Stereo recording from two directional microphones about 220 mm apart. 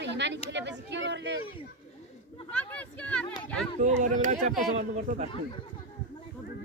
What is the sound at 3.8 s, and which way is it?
Speech, 35° right (ahead or behind).